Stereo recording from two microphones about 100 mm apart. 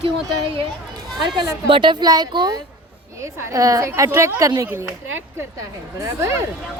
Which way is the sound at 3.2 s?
30° right (ahead or behind).